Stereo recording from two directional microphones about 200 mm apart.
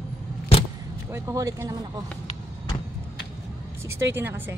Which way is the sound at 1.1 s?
15° right (ahead or behind).